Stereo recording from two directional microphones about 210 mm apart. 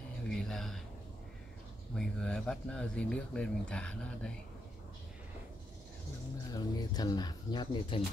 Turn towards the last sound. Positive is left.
turn(degrees=20)  # may be behind; listen again after turning